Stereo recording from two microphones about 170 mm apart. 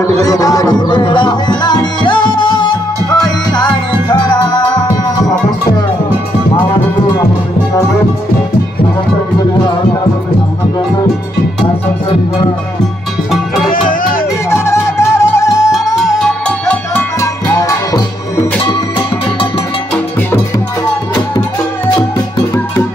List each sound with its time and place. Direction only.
0.2 s music: 20° left (ahead or behind)
13.7 s music: 55° left (ahead or behind)
14.5 s music: 15° left (ahead or behind)
16.0 s music: centre (ahead or behind)
17.2 s music: 15° left (ahead or behind)